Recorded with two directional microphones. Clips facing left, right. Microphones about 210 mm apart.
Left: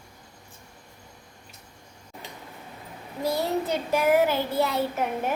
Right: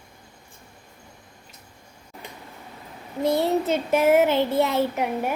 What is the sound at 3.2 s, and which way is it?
Child singing, 25° right (ahead or behind).